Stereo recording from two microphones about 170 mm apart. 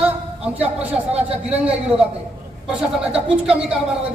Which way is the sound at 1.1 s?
40° right (ahead or behind).